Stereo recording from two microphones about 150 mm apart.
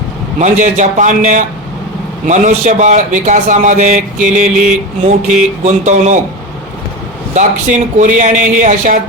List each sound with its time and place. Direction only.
0.3 s a man's voice: 55° right (ahead or behind)
7.3 s speech: 55° right (ahead or behind)